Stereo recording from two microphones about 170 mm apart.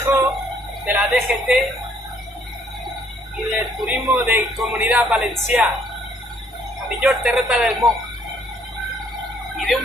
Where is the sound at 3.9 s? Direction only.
15° right (ahead or behind).